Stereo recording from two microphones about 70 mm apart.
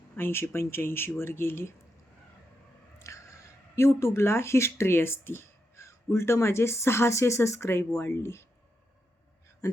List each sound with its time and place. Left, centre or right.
0.2 s speech: left
3.1 s squish: left
3.8 s speech: left